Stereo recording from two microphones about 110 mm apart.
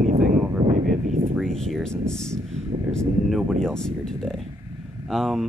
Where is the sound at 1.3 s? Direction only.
5° left (ahead or behind).